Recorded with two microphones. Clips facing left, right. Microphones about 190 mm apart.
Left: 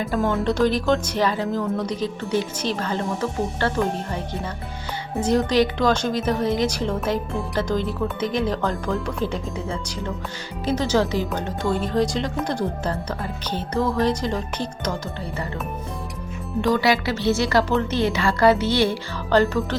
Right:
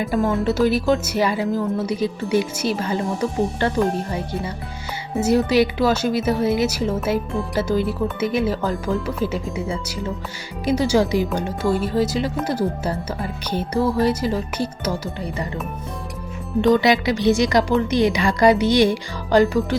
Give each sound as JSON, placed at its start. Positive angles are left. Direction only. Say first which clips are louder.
{"t": 0.2, "sound": "speech", "louder": "right 1 dB", "side_deg": 0}
{"t": 5.1, "sound": "speech", "louder": "right 2 dB", "side_deg": -5}
{"t": 16.6, "sound": "speech", "louder": "right 4 dB", "side_deg": -20}